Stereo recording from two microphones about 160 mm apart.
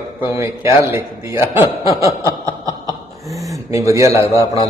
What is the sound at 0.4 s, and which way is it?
Mantra, 15° right (ahead or behind).